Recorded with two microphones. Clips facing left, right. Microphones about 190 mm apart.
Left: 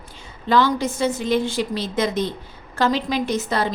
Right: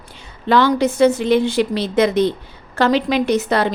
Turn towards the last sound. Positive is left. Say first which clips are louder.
# right 5 dB
turn(degrees=-65)  # may be behind; listen again after turning